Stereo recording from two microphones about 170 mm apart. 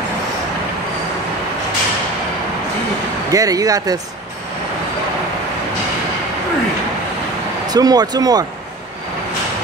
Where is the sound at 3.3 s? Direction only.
20° right (ahead or behind).